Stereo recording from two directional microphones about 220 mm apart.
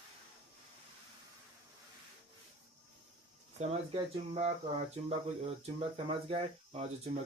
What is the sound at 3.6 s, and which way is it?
Speech, 30° right (ahead or behind).